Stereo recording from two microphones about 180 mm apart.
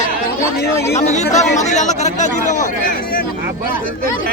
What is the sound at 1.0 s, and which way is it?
Speech, 40° left (ahead or behind).